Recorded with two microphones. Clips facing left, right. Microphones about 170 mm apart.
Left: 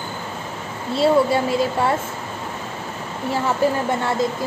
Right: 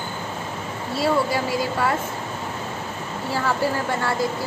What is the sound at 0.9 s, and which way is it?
Speech, 25° left (ahead or behind).